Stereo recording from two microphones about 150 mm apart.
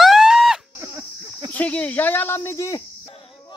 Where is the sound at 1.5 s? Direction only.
10° left (ahead or behind).